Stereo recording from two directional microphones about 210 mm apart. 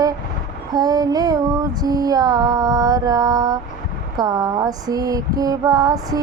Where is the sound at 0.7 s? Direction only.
20° right (ahead or behind).